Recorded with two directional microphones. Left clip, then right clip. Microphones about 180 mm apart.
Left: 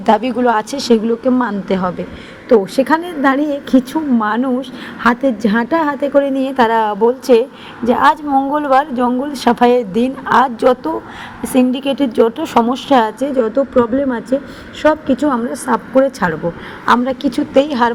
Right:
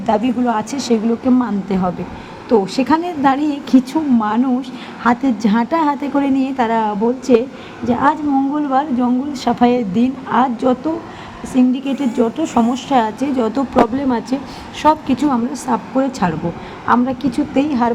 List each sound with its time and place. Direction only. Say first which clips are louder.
0.0 s a woman's voice: left 4 dB; 25° left (ahead or behind)
6.6 s a woman's voice: left 6 dB; 30° left (ahead or behind)
13.3 s speech: left 3 dB; centre (ahead or behind)
15.3 s a woman's voice: left 2 dB; 15° left (ahead or behind)